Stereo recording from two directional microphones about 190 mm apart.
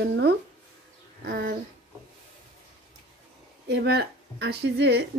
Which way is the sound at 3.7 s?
60° right (ahead or behind).